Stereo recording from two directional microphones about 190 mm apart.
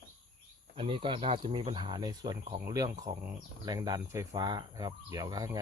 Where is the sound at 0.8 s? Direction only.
25° right (ahead or behind).